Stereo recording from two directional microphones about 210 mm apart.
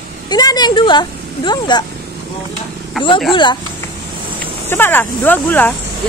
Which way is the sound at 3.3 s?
20° left (ahead or behind).